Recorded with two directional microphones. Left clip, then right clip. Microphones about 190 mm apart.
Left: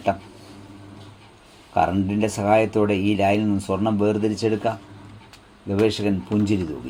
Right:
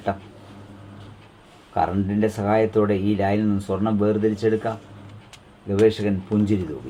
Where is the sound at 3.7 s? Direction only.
25° left (ahead or behind).